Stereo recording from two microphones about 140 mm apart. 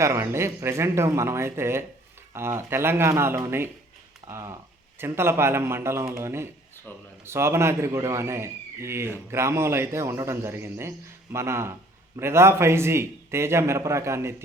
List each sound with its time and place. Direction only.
0.0 s a man's voice: 20° right (ahead or behind)